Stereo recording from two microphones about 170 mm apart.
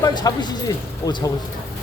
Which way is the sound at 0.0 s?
25° left (ahead or behind).